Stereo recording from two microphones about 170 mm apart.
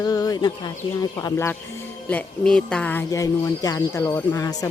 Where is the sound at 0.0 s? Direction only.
20° left (ahead or behind).